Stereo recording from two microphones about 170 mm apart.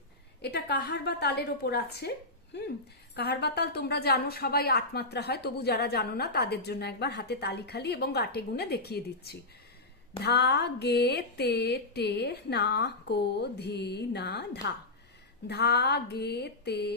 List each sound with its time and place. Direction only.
0.4 s a woman's voice: 75° left (ahead or behind)